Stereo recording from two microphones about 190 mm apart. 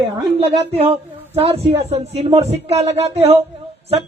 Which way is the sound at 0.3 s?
30° right (ahead or behind).